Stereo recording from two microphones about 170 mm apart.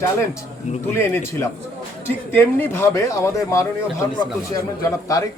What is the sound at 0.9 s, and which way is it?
A man's voice, 15° left (ahead or behind).